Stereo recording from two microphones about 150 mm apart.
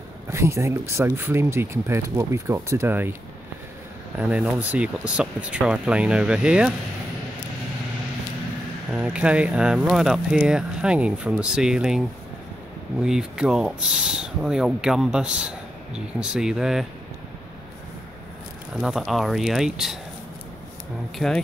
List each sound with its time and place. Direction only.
0.3 s speech: 20° right (ahead or behind)
4.2 s speech: 10° right (ahead or behind)
8.9 s speech: 5° right (ahead or behind)
13.0 s speech: 5° right (ahead or behind)
18.7 s speech: centre (ahead or behind)
21.2 s speech: 5° right (ahead or behind)